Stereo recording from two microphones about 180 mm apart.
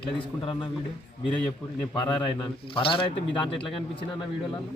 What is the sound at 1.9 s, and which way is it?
Speech, 25° left (ahead or behind).